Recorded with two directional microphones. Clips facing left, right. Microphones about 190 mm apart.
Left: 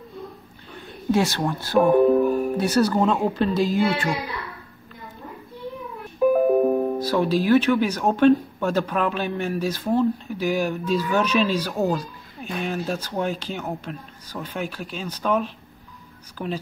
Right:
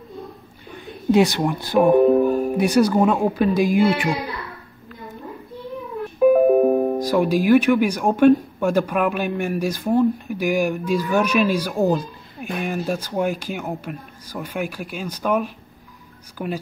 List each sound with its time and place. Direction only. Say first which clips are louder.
1.1 s speech: right 5 dB; 15° right (ahead or behind)
6.1 s music: right 4 dB; 15° right (ahead or behind)
7.0 s speech: right 2 dB; 15° right (ahead or behind)